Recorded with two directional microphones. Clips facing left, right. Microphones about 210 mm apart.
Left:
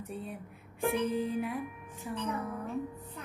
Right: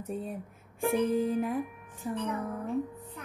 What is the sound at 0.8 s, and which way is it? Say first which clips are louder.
Music: right 4 dB; 45° right (ahead or behind).